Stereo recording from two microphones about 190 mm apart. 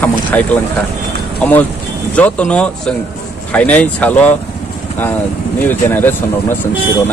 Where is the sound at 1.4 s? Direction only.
10° left (ahead or behind).